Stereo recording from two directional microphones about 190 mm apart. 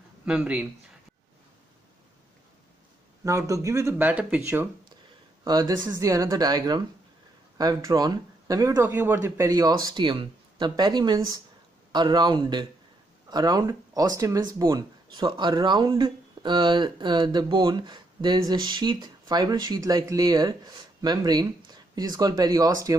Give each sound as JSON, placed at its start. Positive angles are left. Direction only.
{"t": 0.2, "sound": "speech", "side_deg": -10}
{"t": 3.3, "sound": "speech", "side_deg": -15}